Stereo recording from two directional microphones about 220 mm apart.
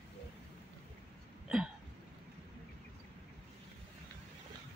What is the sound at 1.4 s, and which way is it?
Hiccup, 5° right (ahead or behind).